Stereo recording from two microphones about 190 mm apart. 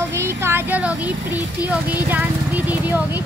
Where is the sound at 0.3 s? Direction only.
10° right (ahead or behind).